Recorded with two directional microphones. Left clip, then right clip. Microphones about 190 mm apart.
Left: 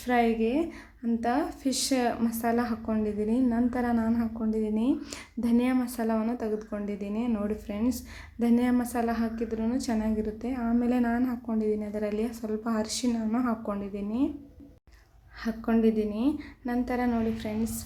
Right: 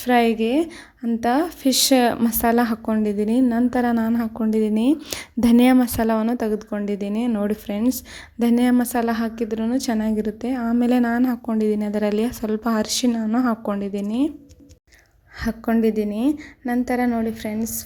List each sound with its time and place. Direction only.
0.0 s a woman's voice: 45° right (ahead or behind)
15.4 s a woman's voice: 40° right (ahead or behind)